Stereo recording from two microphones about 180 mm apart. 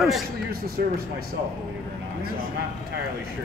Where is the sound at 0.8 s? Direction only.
60° right (ahead or behind).